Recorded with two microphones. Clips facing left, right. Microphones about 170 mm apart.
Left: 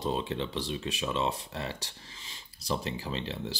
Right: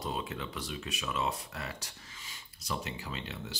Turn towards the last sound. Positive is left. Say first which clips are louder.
# left 6 dB
turn(degrees=30)  # may be behind; listen again after turning